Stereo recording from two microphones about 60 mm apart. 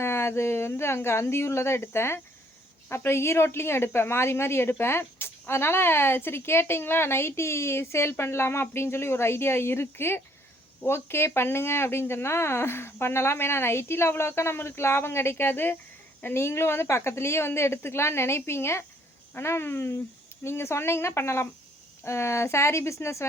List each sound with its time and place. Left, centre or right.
0.0 s speech: left